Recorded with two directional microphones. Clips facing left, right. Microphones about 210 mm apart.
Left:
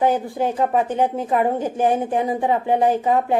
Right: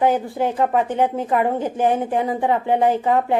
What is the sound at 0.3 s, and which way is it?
A woman's voice, 15° left (ahead or behind).